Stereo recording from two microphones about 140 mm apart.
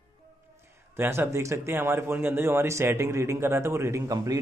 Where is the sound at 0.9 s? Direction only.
15° right (ahead or behind).